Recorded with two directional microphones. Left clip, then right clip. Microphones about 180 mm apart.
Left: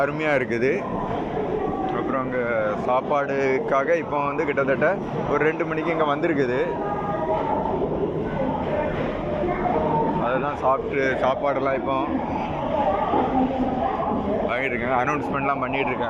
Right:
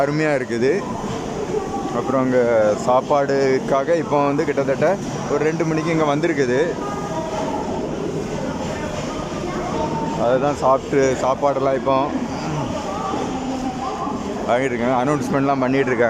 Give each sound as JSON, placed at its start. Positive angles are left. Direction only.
{"t": 0.0, "sound": "speech", "side_deg": -20}
{"t": 2.1, "sound": "speech", "side_deg": -30}
{"t": 10.2, "sound": "speech", "side_deg": -30}
{"t": 14.5, "sound": "speech", "side_deg": -30}